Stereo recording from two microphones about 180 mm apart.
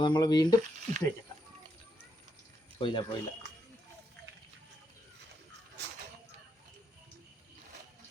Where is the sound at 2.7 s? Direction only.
30° left (ahead or behind).